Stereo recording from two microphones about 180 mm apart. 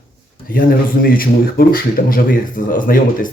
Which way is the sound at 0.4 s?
50° left (ahead or behind).